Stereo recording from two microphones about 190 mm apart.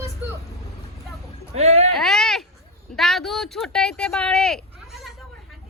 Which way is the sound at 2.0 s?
Centre (ahead or behind).